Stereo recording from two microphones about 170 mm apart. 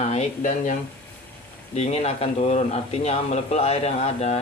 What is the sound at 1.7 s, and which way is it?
Speech, 40° left (ahead or behind).